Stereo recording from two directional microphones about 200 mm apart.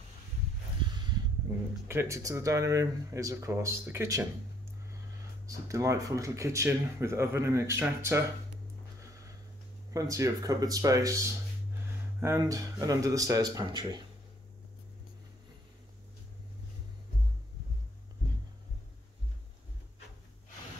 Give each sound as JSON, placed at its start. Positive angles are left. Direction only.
{"t": 1.9, "sound": "speech", "side_deg": -15}
{"t": 5.5, "sound": "speech", "side_deg": -15}
{"t": 9.9, "sound": "speech", "side_deg": -15}